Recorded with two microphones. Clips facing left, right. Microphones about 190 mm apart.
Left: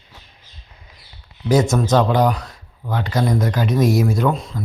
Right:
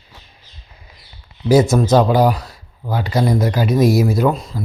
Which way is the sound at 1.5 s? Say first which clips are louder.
Right 4 dB; 10° right (ahead or behind).